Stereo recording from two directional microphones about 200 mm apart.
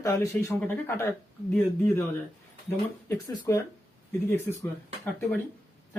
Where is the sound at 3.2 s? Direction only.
15° left (ahead or behind).